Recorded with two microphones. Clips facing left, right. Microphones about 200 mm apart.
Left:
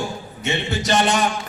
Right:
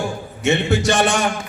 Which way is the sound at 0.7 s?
60° right (ahead or behind).